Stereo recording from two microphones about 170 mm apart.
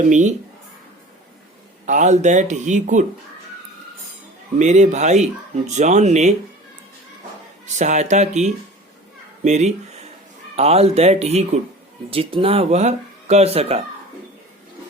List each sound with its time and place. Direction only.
0.0 s speech: 45° right (ahead or behind)
1.9 s speech: 45° right (ahead or behind)
4.5 s speech: 45° right (ahead or behind)
7.6 s speech: 45° right (ahead or behind)